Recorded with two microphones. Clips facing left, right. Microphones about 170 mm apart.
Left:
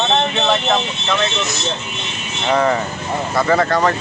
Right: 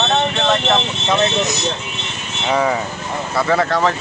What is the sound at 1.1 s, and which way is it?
Speech, 20° right (ahead or behind).